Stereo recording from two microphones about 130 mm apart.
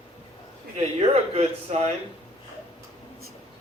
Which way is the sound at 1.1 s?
50° right (ahead or behind).